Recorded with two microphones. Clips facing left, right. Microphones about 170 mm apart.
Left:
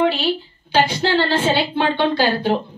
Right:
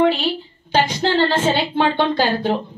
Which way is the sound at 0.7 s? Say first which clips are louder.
Even; 45° right (ahead or behind).